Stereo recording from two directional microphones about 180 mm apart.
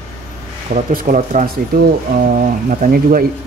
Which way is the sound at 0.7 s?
40° right (ahead or behind).